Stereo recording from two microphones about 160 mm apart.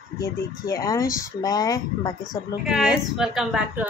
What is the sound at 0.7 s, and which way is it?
Speech, 20° left (ahead or behind).